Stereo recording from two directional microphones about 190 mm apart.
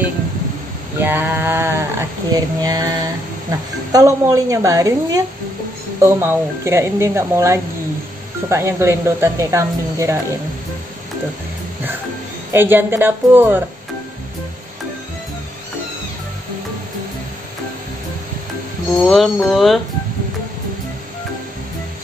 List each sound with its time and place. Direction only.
0.9 s speech: 10° right (ahead or behind)
12.5 s speech: 10° right (ahead or behind)
19.0 s speech: centre (ahead or behind)